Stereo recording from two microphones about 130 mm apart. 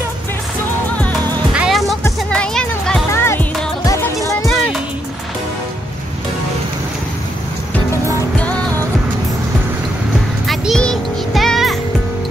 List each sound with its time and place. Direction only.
1.5 s music: 5° right (ahead or behind)
3.1 s music: 20° left (ahead or behind)
10.4 s music: centre (ahead or behind)